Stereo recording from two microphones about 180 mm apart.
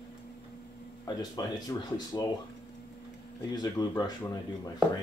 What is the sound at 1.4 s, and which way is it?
Speech, 20° left (ahead or behind).